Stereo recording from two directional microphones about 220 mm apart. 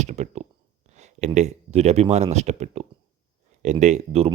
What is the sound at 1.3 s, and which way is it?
Speech, 30° right (ahead or behind).